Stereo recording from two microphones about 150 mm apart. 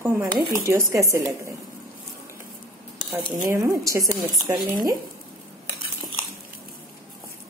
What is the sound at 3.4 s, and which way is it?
A woman's voice, 20° right (ahead or behind).